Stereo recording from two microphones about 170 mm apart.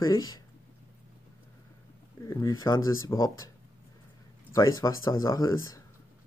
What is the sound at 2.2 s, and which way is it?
Speech, 20° left (ahead or behind).